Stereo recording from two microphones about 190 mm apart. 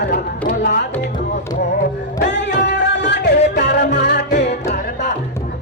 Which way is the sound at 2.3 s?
65° left (ahead or behind).